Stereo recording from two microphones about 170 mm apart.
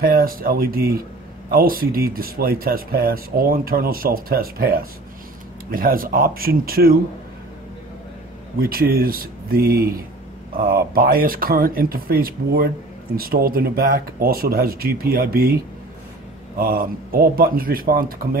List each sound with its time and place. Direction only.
0.0 s speech: 60° right (ahead or behind)
8.5 s speech: 60° right (ahead or behind)
16.5 s speech: 60° right (ahead or behind)